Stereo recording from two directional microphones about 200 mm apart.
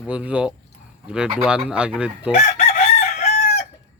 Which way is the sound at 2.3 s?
35° left (ahead or behind).